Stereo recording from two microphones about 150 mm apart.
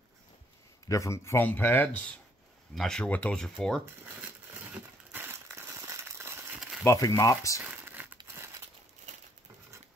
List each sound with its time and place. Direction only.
0.8 s speech: 20° left (ahead or behind); by 3.8 s 5° left (ahead or behind)
4.7 s a sound: 15° right (ahead or behind)
6.8 s speech: 20° left (ahead or behind)
7.6 s crumpling: 10° right (ahead or behind)